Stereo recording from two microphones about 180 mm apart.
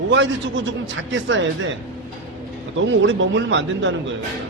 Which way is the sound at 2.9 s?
90° right.